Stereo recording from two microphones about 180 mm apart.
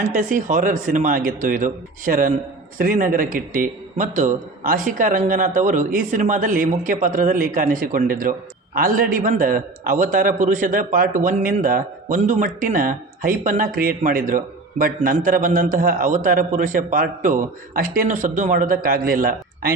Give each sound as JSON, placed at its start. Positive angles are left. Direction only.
{"t": 0.0, "sound": "a man's voice", "side_deg": -45}